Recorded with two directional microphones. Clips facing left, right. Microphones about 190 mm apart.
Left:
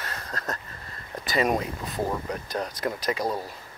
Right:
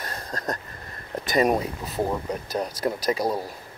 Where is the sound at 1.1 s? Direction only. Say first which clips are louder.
Right 4 dB; 20° right (ahead or behind).